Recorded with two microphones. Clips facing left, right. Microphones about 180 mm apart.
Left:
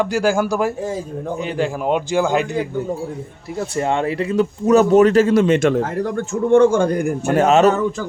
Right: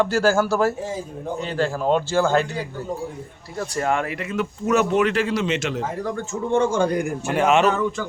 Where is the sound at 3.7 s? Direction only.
25° left (ahead or behind).